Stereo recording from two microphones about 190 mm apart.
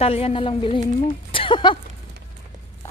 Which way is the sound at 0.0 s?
30° left (ahead or behind).